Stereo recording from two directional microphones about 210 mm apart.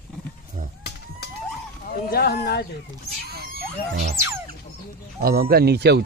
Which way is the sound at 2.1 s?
50° left (ahead or behind).